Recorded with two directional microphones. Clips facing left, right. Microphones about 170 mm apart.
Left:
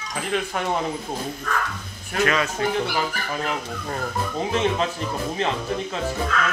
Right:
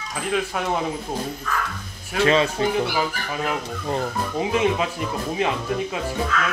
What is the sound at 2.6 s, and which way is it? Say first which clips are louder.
Speech: right 2 dB; 25° right (ahead or behind).